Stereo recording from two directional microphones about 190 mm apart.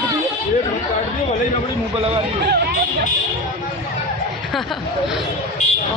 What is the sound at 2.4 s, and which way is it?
Speech, 55° right (ahead or behind).